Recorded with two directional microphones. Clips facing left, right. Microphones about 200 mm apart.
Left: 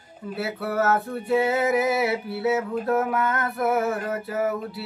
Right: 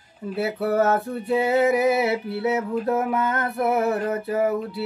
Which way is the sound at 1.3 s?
25° right (ahead or behind).